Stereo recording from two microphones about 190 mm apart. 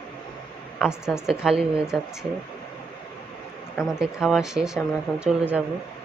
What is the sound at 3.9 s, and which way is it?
Speech, 5° right (ahead or behind).